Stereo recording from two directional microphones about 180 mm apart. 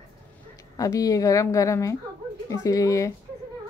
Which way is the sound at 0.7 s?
20° left (ahead or behind).